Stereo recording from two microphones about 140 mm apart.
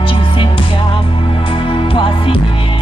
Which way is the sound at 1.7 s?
40° left (ahead or behind).